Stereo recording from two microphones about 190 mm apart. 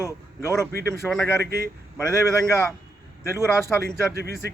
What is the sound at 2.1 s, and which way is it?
Speech, 15° left (ahead or behind).